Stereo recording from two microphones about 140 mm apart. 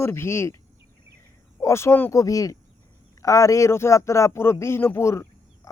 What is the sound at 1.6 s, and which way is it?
A man's voice, 20° left (ahead or behind).